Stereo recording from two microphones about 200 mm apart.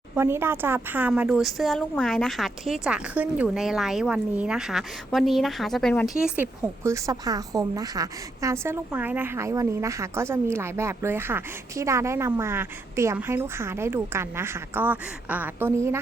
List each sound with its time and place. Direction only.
0.2 s a woman's voice: 10° right (ahead or behind); by 6.1 s 5° left (ahead or behind)
6.1 s a woman's voice: 5° right (ahead or behind)